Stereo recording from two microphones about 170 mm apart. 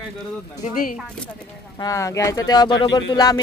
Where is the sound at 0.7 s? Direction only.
55° left (ahead or behind).